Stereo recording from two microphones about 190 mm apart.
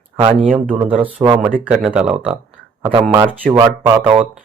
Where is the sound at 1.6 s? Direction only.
5° right (ahead or behind).